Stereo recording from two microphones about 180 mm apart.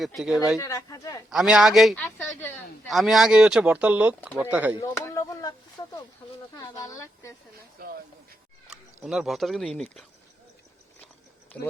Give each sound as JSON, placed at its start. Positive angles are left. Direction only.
{"t": 0.0, "sound": "speech", "side_deg": 0}
{"t": 0.6, "sound": "speech", "side_deg": 20}
{"t": 1.3, "sound": "speech", "side_deg": -5}
{"t": 2.0, "sound": "speech", "side_deg": 10}
{"t": 2.8, "sound": "speech", "side_deg": 0}
{"t": 4.8, "sound": "a sound", "side_deg": 15}
{"t": 5.8, "sound": "speech", "side_deg": 20}
{"t": 7.8, "sound": "a sound", "side_deg": -55}
{"t": 8.7, "sound": "speech", "side_deg": -5}
{"t": 11.5, "sound": "speech", "side_deg": 5}